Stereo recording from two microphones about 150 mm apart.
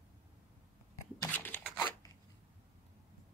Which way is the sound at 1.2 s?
10° left (ahead or behind).